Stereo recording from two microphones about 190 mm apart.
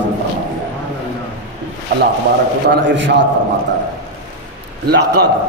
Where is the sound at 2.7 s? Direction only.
70° right (ahead or behind).